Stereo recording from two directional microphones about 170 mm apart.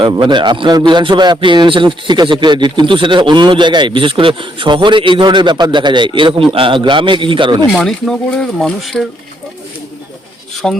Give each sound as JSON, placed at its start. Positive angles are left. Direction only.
{"t": 0.0, "sound": "a man's voice", "side_deg": -30}
{"t": 7.7, "sound": "speech", "side_deg": 0}
{"t": 10.6, "sound": "speech", "side_deg": 5}